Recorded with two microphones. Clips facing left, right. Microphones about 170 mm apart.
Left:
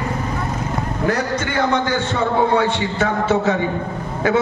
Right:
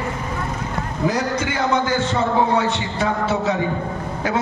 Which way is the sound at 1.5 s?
60° left (ahead or behind).